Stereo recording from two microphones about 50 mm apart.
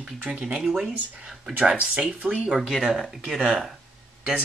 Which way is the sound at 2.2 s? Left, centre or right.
Right.